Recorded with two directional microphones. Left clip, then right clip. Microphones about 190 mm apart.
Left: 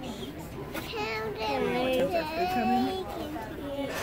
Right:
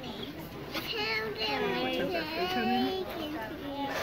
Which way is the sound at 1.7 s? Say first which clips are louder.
Left 4 dB; 20° left (ahead or behind).